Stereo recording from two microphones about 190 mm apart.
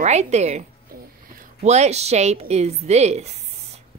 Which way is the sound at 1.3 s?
40° right (ahead or behind).